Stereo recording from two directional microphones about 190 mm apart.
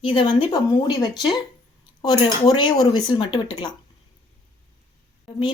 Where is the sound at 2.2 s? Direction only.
25° left (ahead or behind).